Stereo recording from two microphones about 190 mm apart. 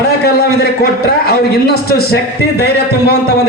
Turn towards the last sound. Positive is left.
turn(degrees=60)  # may be behind; listen again after turning